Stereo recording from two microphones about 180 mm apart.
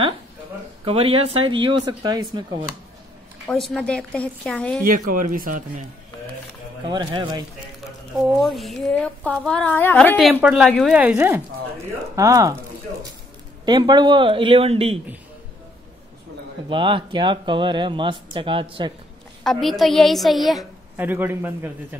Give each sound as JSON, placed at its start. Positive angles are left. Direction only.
{"t": 0.8, "sound": "speech", "side_deg": -30}
{"t": 3.4, "sound": "speech", "side_deg": 0}
{"t": 4.8, "sound": "speech", "side_deg": -50}
{"t": 6.9, "sound": "speech", "side_deg": -25}
{"t": 8.2, "sound": "speech", "side_deg": 0}
{"t": 10.4, "sound": "a man's voice", "side_deg": -5}
{"t": 13.7, "sound": "speech", "side_deg": -25}
{"t": 16.6, "sound": "speech", "side_deg": -30}
{"t": 19.4, "sound": "speech", "side_deg": 0}
{"t": 20.9, "sound": "a man's voice", "side_deg": -10}